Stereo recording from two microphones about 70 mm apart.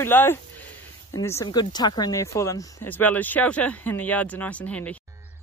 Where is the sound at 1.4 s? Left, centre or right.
Left.